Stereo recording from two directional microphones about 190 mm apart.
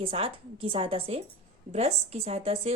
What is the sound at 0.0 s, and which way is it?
Speech, 30° right (ahead or behind).